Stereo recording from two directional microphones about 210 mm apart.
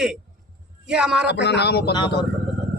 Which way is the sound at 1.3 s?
55° left (ahead or behind).